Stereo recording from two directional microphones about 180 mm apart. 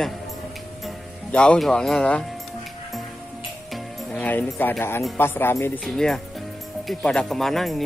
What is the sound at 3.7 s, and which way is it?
Music, 5° left (ahead or behind).